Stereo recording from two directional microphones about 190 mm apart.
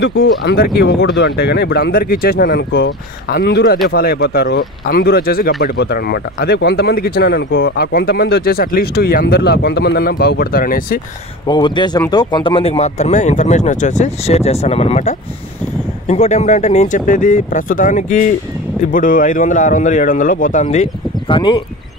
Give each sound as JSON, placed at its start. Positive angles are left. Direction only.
{"t": 0.0, "sound": "speech", "side_deg": 75}
{"t": 11.4, "sound": "speech", "side_deg": 25}